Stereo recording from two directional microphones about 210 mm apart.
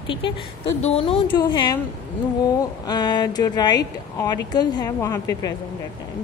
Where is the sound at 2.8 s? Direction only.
20° left (ahead or behind).